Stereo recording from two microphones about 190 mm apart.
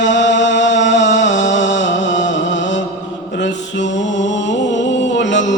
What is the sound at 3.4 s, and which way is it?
Mantra, 70° left (ahead or behind).